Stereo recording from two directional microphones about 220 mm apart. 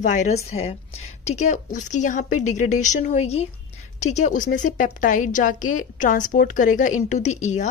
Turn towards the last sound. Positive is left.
turn(degrees=35)  # may be behind; listen again after turning